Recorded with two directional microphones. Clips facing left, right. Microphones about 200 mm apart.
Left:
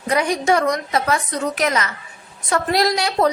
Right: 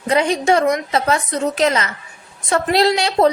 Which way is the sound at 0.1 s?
25° right (ahead or behind).